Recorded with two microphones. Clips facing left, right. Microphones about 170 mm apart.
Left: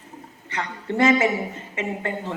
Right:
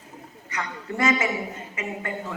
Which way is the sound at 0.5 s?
30° left (ahead or behind).